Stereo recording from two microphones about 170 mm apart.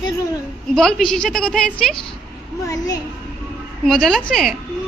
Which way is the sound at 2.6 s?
20° left (ahead or behind).